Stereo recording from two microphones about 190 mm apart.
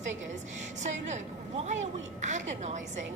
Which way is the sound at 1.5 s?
35° right (ahead or behind).